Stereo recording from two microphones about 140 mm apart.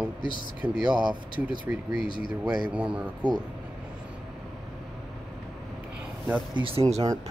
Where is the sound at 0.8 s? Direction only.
30° right (ahead or behind).